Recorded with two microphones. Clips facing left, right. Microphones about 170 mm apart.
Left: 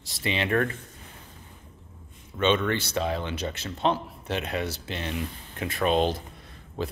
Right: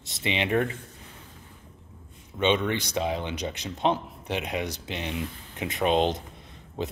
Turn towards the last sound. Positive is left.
turn(degrees=-20)  # may be behind; listen again after turning